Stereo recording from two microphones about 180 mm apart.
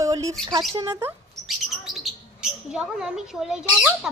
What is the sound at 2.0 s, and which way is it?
Speech, 5° right (ahead or behind).